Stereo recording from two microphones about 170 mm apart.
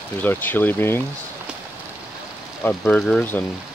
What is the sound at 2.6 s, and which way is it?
Speech, 5° left (ahead or behind).